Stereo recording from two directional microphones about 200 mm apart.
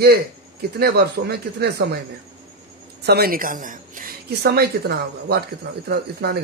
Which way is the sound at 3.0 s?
50° right (ahead or behind).